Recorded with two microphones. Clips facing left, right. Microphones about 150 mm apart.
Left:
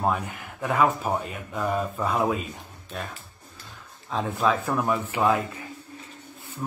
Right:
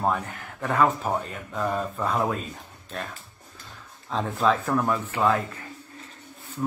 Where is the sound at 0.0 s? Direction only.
5° left (ahead or behind).